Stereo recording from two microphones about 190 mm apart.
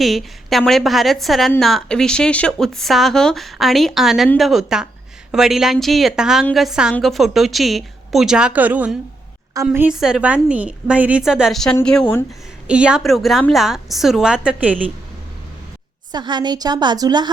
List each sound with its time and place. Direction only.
0.0 s a woman's voice: centre (ahead or behind)
16.1 s a woman's voice: 20° right (ahead or behind)